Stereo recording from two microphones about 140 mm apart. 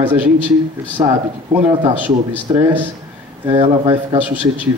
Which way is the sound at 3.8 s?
10° right (ahead or behind).